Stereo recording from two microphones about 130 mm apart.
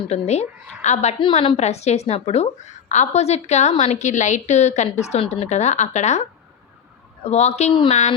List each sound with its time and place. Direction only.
0.1 s a woman's voice: 60° left (ahead or behind)
1.2 s a woman's voice: 50° left (ahead or behind)
7.3 s a woman's voice: 60° left (ahead or behind)